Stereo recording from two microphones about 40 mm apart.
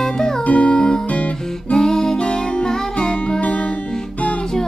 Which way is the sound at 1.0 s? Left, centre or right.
Left.